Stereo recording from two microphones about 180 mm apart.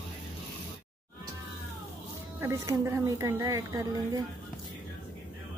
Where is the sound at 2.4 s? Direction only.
15° right (ahead or behind).